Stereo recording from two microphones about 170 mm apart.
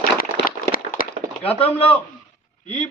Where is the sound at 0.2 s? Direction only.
55° left (ahead or behind).